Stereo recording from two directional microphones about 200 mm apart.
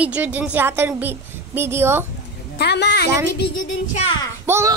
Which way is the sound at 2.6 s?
60° left (ahead or behind).